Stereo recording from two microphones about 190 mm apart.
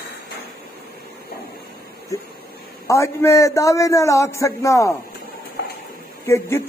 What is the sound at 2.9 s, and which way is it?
A man's voice, 15° left (ahead or behind).